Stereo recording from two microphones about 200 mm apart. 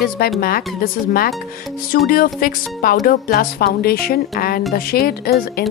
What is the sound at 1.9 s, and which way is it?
A woman's voice, 45° left (ahead or behind).